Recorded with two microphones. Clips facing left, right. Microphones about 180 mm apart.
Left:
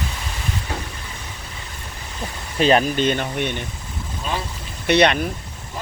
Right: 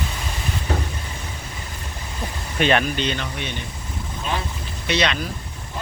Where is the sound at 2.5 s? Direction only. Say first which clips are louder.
Left 3 dB; 35° left (ahead or behind); by 3.6 s 55° left (ahead or behind).